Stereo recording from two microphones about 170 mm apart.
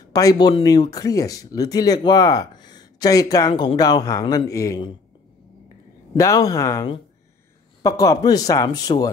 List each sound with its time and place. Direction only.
0.1 s speech: 20° left (ahead or behind)
6.1 s speech: 20° left (ahead or behind)